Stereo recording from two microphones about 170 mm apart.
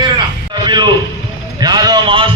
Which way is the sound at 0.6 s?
25° right (ahead or behind).